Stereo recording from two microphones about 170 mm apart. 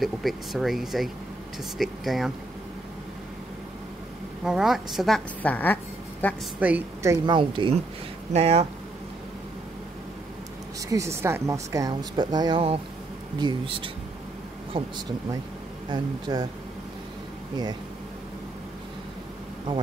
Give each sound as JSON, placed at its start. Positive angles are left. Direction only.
{"t": 0.0, "sound": "a woman's voice", "side_deg": 0}
{"t": 4.5, "sound": "a woman's voice", "side_deg": 0}
{"t": 6.6, "sound": "a woman's voice", "side_deg": -10}
{"t": 7.3, "sound": "a woman's voice", "side_deg": -30}
{"t": 10.9, "sound": "a woman's voice", "side_deg": -15}
{"t": 15.9, "sound": "a woman's voice", "side_deg": -25}